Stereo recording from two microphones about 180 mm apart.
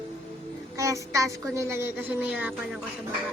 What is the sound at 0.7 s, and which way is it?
A woman's voice, 15° right (ahead or behind).